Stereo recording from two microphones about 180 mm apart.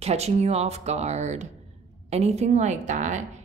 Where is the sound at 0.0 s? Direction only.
35° right (ahead or behind).